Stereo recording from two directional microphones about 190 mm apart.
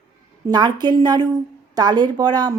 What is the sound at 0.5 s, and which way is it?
Speech, 20° right (ahead or behind).